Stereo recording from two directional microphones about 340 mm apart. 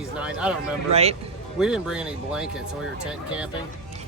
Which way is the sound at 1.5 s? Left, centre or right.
Centre.